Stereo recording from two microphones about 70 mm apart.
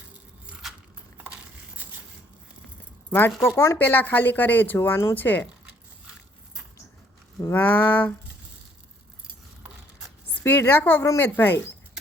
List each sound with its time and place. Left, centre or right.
1.2 s a sound: right
3.1 s speech: left
3.4 s speech: left
3.8 s speech: left
7.5 s speech: left
10.4 s speech: left